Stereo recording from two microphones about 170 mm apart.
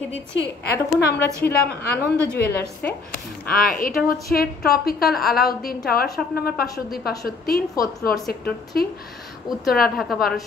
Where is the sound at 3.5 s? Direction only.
55° left (ahead or behind).